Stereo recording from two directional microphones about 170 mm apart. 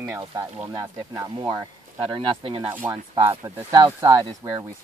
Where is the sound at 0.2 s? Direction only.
20° right (ahead or behind).